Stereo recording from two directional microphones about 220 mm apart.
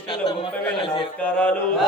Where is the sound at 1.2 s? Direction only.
5° left (ahead or behind).